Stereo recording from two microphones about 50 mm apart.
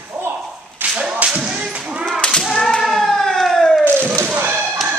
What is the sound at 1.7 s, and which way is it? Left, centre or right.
Whip, right.